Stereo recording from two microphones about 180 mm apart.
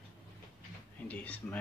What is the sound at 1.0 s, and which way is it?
Speech, 10° left (ahead or behind).